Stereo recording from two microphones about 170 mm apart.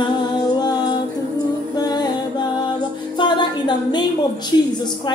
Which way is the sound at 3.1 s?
25° left (ahead or behind).